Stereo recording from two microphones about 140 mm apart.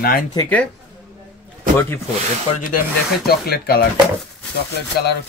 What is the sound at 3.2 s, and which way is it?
Speech, 90° left.